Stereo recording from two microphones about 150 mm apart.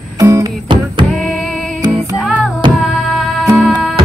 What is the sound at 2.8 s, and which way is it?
Music, centre (ahead or behind).